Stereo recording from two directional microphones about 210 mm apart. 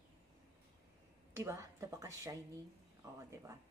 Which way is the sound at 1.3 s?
15° right (ahead or behind).